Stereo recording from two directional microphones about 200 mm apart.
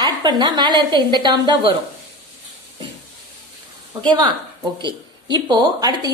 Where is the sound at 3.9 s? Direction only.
20° right (ahead or behind).